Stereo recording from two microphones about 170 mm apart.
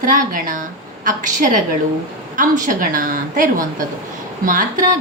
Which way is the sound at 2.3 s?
50° right (ahead or behind).